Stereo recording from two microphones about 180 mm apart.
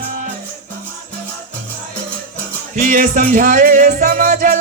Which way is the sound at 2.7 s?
50° right (ahead or behind).